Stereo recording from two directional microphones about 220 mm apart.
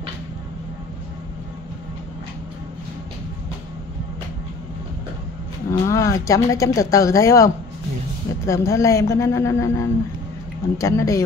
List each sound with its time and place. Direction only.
5.7 s speech: 15° left (ahead or behind)